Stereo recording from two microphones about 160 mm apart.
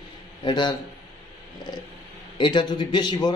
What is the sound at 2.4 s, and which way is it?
Speech, 30° left (ahead or behind).